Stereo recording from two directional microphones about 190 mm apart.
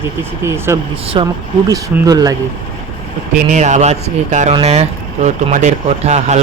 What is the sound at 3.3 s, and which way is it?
Speech, 40° right (ahead or behind).